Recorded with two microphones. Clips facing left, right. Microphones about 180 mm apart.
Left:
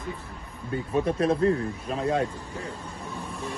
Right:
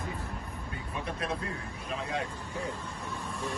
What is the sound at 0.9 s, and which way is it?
Speech, 40° left (ahead or behind).